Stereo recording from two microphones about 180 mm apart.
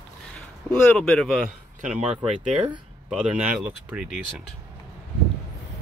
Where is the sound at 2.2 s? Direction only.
40° right (ahead or behind).